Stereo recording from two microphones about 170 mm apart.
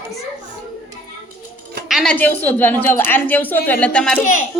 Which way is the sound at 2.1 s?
10° left (ahead or behind).